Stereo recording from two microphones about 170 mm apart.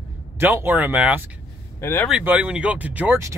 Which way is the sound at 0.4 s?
10° right (ahead or behind).